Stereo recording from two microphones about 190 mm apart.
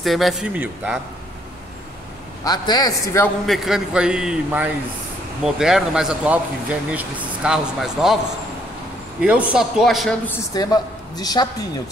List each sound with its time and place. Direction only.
0.0 s speech: centre (ahead or behind)
2.4 s a man's voice: 20° left (ahead or behind)
3.4 s speech: centre (ahead or behind)
9.2 s speech: 5° right (ahead or behind)
10.5 s a man's voice: 20° left (ahead or behind)